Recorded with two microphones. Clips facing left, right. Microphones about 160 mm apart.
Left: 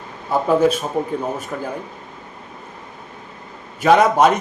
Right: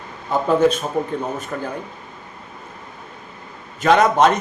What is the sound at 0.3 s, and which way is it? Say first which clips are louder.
A man's voice: even; 5° left (ahead or behind).